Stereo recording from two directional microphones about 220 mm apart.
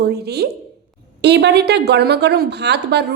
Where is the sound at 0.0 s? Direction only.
45° right (ahead or behind).